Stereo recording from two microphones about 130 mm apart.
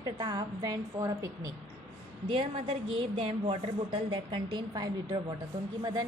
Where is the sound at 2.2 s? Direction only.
40° right (ahead or behind).